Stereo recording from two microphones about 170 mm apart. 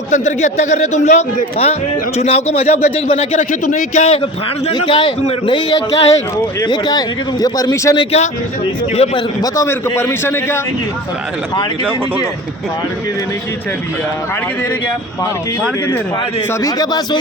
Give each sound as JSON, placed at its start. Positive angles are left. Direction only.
{"t": 0.1, "sound": "a man's voice", "side_deg": 45}
{"t": 3.3, "sound": "a man's voice", "side_deg": 50}
{"t": 4.8, "sound": "speech", "side_deg": 30}
{"t": 7.9, "sound": "a man's voice", "side_deg": 40}
{"t": 9.4, "sound": "a man's voice", "side_deg": 15}
{"t": 16.5, "sound": "speech", "side_deg": 20}